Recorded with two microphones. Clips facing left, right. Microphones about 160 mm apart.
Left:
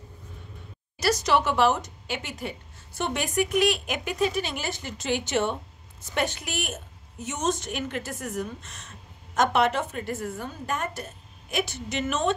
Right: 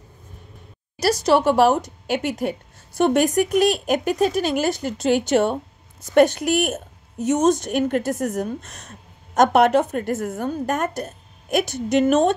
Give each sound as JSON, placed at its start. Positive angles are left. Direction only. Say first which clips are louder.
{"t": 0.9, "sound": "a woman's voice", "louder": "right 6 dB", "side_deg": -35}